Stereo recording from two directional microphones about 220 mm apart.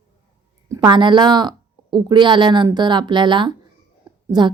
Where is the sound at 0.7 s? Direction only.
20° right (ahead or behind).